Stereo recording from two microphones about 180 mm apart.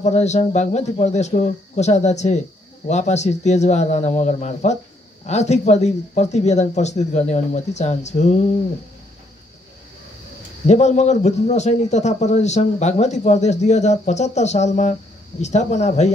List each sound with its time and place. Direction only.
0.0 s a man's voice: 40° left (ahead or behind)
10.7 s a man's voice: 40° left (ahead or behind)